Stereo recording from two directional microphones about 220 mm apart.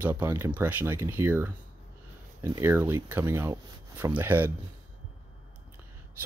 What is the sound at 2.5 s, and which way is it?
Speech, 10° right (ahead or behind).